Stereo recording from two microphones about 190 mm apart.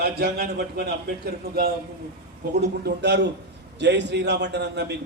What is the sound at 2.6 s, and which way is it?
A man's voice, 60° right (ahead or behind).